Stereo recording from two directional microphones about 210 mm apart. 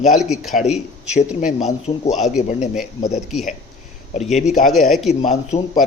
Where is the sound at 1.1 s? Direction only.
35° left (ahead or behind).